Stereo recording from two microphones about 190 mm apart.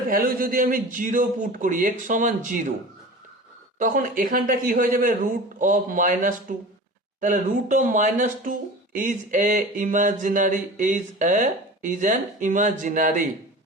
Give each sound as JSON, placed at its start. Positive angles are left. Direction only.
{"t": 0.1, "sound": "speech", "side_deg": -50}
{"t": 3.8, "sound": "speech", "side_deg": -45}